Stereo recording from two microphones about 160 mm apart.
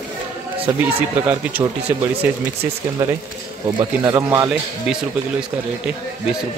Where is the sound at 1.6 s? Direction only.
10° right (ahead or behind).